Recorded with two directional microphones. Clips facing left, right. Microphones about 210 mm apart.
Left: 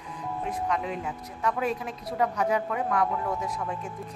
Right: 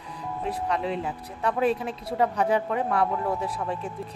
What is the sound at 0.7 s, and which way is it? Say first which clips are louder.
A woman's voice: right 2 dB; 30° right (ahead or behind).